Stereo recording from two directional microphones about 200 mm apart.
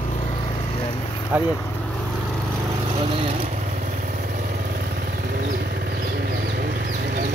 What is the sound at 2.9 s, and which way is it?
Vehicle, 25° right (ahead or behind).